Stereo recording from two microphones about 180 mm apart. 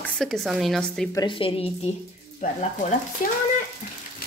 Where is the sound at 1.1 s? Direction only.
25° left (ahead or behind).